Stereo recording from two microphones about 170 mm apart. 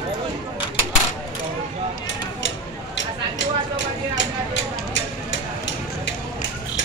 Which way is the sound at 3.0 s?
90° left.